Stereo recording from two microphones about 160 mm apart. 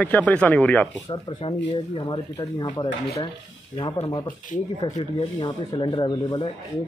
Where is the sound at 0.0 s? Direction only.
10° left (ahead or behind).